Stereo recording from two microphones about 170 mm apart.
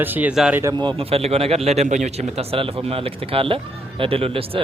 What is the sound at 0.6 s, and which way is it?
A man's voice, 25° right (ahead or behind).